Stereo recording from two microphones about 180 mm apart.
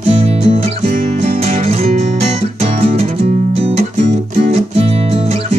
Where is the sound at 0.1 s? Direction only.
35° right (ahead or behind).